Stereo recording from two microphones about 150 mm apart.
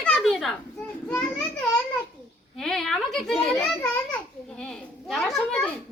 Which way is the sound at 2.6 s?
5° left (ahead or behind).